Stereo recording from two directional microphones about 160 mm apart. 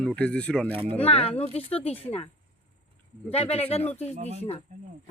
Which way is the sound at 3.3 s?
40° left (ahead or behind).